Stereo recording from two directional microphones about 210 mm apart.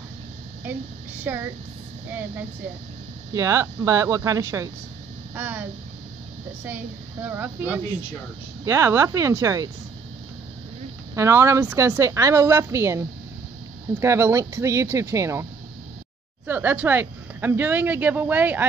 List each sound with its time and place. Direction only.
0.7 s speech: 10° right (ahead or behind)
3.3 s speech: 15° right (ahead or behind)
11.1 s speech: 15° right (ahead or behind)
16.4 s speech: 10° right (ahead or behind)